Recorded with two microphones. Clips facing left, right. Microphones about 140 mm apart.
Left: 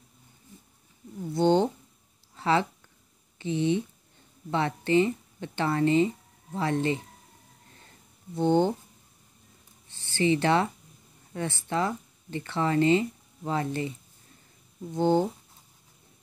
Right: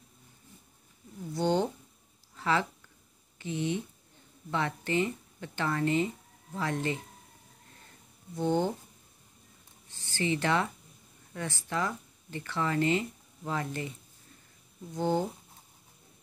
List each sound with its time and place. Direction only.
1.3 s a sound: 25° left (ahead or behind)
3.3 s speech: 25° left (ahead or behind)
8.4 s speech: 25° left (ahead or behind)
9.8 s speech: 30° left (ahead or behind)
15.0 s speech: 25° left (ahead or behind)